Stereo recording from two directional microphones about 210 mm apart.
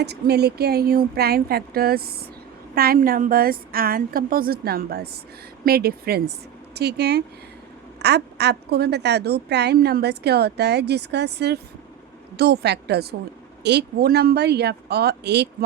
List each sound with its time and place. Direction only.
0.0 s speech: 50° right (ahead or behind)